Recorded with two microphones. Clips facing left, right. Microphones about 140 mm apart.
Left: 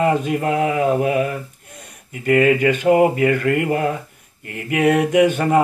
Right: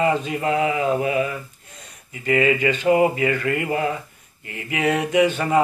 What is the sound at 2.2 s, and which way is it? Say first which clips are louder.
Mantra: left 4 dB; 55° left (ahead or behind).